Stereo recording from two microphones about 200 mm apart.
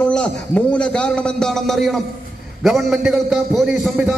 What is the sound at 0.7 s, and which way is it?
A man's voice, 5° left (ahead or behind).